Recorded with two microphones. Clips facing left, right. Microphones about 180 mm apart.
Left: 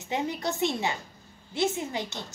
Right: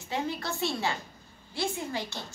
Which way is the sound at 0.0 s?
20° left (ahead or behind).